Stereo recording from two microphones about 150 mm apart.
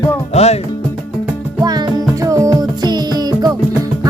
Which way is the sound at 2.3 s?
25° right (ahead or behind).